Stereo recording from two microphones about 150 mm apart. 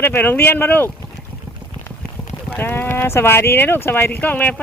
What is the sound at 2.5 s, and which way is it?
Speech, 15° left (ahead or behind).